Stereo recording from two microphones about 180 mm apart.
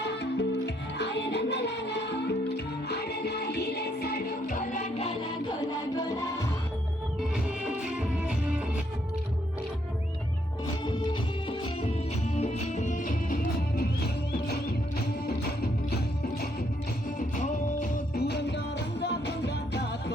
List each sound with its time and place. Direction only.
0.0 s music: 75° left (ahead or behind); by 5.3 s 35° left (ahead or behind)
5.5 s music: 20° left (ahead or behind)
7.6 s music: 5° right (ahead or behind)
10.8 s music: 25° left (ahead or behind); by 13.8 s 50° left (ahead or behind)
14.4 s music: 60° left (ahead or behind)
17.2 s music: 45° left (ahead or behind); by 20.1 s 70° left (ahead or behind)